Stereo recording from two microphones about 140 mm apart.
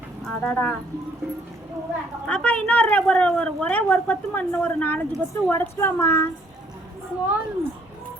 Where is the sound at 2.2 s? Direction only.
10° left (ahead or behind).